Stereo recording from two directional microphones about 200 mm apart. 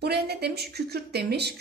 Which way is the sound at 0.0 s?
55° right (ahead or behind).